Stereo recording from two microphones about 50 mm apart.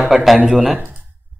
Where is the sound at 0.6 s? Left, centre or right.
Right.